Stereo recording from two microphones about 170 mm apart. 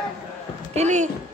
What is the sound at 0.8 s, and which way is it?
Speech, 45° right (ahead or behind).